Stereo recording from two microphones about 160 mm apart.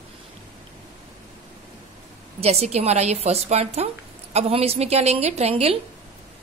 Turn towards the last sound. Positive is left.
turn(degrees=-40)  # may be behind; listen again after turning